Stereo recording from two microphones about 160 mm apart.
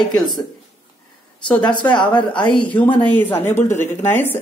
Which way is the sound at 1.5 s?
5° left (ahead or behind).